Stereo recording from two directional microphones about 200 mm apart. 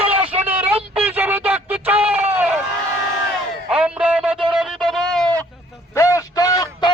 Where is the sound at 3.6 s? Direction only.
5° right (ahead or behind).